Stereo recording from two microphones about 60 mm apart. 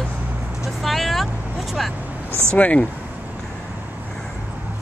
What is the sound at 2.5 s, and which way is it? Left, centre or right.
Speech, centre.